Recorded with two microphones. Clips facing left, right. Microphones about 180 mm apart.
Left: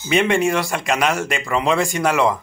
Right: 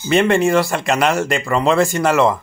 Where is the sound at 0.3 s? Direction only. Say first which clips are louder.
Right 4 dB; 10° left (ahead or behind).